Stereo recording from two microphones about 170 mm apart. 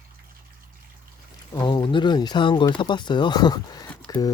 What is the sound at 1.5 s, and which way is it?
Speech, 25° left (ahead or behind).